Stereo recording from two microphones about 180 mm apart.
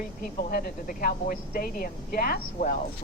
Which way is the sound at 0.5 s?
55° left (ahead or behind).